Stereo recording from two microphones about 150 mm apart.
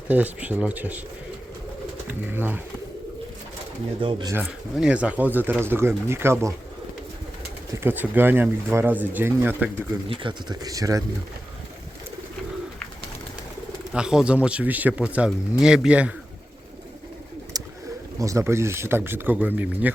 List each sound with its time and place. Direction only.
0.1 s speech: 10° right (ahead or behind)
2.3 s speech: 15° right (ahead or behind)
4.0 s speech: 30° right (ahead or behind)
4.4 s speech: 10° right (ahead or behind)
7.8 s speech: 15° right (ahead or behind)
10.1 s speech: 30° right (ahead or behind)
13.9 s speech: 5° right (ahead or behind)
17.5 s bird: 25° right (ahead or behind)
18.2 s speech: 20° right (ahead or behind)